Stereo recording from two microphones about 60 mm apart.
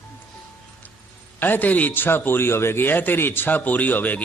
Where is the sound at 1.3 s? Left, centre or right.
Left.